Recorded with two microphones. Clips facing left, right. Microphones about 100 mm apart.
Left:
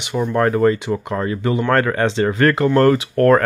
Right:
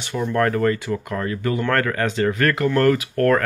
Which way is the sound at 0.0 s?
15° left (ahead or behind).